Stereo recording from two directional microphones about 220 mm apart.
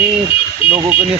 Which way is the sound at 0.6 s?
25° left (ahead or behind).